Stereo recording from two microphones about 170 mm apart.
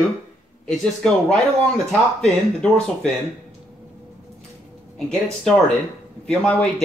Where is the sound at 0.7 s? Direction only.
5° left (ahead or behind).